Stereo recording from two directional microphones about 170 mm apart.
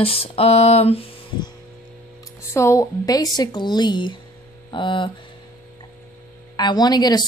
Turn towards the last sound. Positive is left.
turn(degrees=25)  # may be behind; listen again after turning